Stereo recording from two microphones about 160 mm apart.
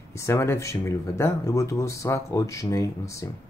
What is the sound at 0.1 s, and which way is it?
Speech, 15° left (ahead or behind).